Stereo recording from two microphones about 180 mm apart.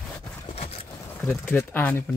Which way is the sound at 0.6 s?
30° left (ahead or behind).